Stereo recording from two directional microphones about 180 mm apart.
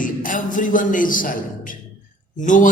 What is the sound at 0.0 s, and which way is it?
A man's voice, 50° left (ahead or behind).